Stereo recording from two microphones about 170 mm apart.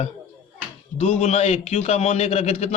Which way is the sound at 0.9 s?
40° left (ahead or behind).